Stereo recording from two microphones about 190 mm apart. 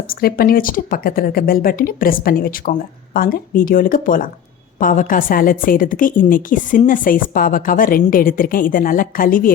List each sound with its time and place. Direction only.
0.1 s a woman's voice: 50° left (ahead or behind)